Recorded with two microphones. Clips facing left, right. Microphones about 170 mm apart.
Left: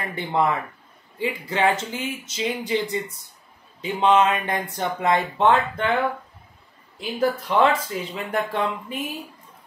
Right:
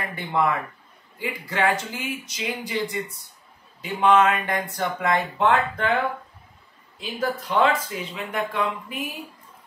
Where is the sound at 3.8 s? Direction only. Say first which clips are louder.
Even; 20° left (ahead or behind).